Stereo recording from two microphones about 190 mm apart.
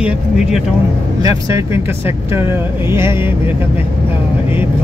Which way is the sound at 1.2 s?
15° right (ahead or behind).